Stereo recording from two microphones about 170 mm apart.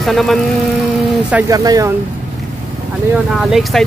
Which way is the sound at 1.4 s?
20° right (ahead or behind).